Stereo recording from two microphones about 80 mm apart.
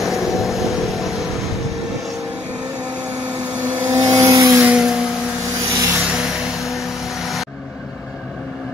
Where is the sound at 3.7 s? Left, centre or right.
Right.